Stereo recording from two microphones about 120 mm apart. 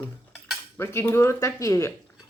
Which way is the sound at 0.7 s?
20° left (ahead or behind).